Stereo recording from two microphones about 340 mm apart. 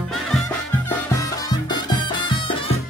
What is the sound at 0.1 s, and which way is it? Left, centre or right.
Music, centre.